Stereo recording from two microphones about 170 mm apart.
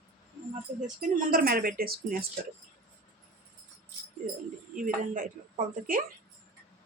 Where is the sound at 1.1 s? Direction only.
55° right (ahead or behind).